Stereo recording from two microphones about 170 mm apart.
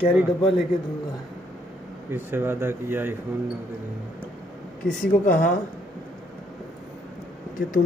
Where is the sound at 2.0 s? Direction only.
15° right (ahead or behind).